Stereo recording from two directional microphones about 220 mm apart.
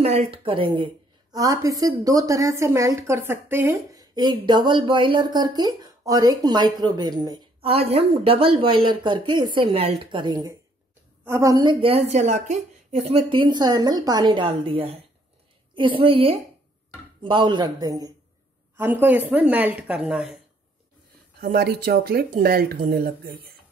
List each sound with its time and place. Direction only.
0.0 s a woman's voice: 30° right (ahead or behind); by 20.3 s centre (ahead or behind)
21.4 s speech: 45° right (ahead or behind)